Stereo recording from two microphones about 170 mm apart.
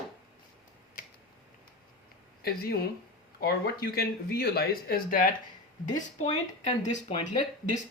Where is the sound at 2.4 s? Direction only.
65° left (ahead or behind); by 6.3 s 45° left (ahead or behind).